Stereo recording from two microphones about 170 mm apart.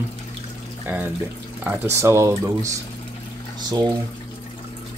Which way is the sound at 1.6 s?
15° right (ahead or behind).